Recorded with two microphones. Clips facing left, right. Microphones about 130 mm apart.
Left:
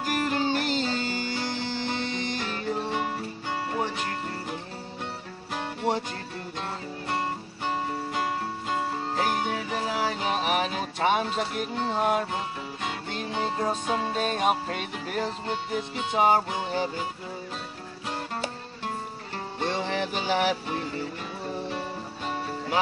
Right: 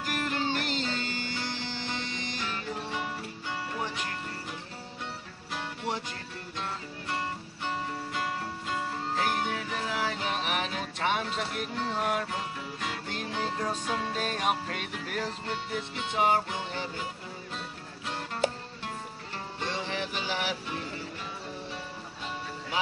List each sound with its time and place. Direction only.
0.0 s music: 35° left (ahead or behind); by 6.0 s 50° left (ahead or behind)
7.6 s music: 25° left (ahead or behind); by 10.7 s 40° left (ahead or behind)
10.7 s music: 30° left (ahead or behind)
13.3 s music: 25° left (ahead or behind)
14.4 s music: 35° left (ahead or behind)
19.6 s music: 50° left (ahead or behind)